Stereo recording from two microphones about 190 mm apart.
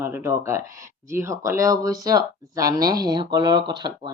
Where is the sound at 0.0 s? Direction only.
15° right (ahead or behind).